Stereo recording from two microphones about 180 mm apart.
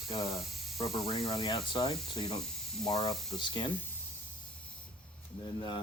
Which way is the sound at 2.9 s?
20° left (ahead or behind).